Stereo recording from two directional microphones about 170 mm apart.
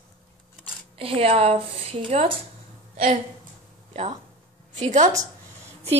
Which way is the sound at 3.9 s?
40° right (ahead or behind).